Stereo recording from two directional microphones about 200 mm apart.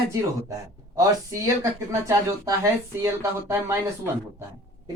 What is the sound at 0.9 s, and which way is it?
Speech, 15° right (ahead or behind).